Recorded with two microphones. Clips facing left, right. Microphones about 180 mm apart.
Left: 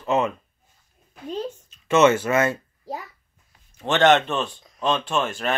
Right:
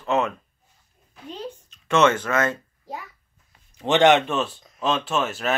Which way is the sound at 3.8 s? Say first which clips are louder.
Right 1 dB; 15° right (ahead or behind).